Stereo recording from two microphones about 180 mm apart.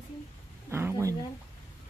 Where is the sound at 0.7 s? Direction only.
15° right (ahead or behind).